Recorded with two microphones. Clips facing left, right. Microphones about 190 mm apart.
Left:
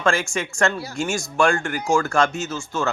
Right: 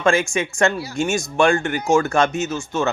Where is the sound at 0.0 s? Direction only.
20° right (ahead or behind).